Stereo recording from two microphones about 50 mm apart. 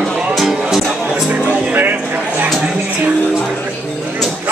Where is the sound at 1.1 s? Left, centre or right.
Right.